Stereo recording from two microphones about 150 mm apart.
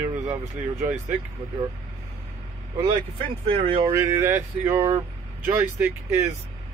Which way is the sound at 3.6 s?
40° right (ahead or behind).